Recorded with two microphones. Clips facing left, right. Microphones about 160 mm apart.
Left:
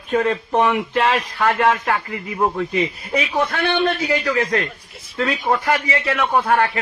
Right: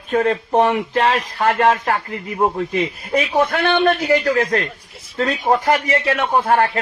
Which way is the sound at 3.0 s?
50° right (ahead or behind).